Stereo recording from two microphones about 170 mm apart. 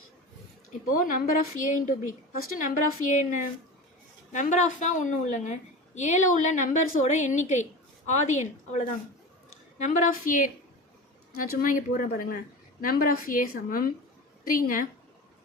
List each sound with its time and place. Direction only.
0.9 s a woman's voice: 55° left (ahead or behind)